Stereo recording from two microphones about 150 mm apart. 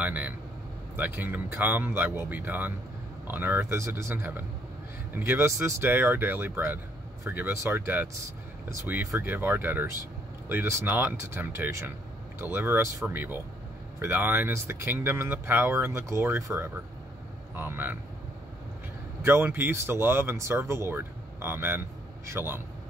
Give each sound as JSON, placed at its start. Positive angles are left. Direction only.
{"t": 0.0, "sound": "speech", "side_deg": -10}
{"t": 19.2, "sound": "speech", "side_deg": -15}